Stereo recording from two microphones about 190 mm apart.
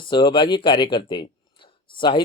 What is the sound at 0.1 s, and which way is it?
Speech, 25° left (ahead or behind).